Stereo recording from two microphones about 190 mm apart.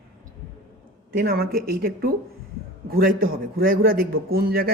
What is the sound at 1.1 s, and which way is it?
A man's voice, 50° right (ahead or behind).